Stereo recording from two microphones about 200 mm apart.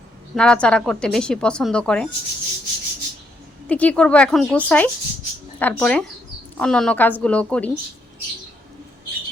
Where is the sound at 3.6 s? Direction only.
5° left (ahead or behind).